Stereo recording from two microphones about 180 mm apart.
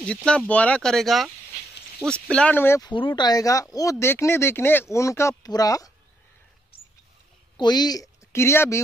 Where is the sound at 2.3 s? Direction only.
5° left (ahead or behind).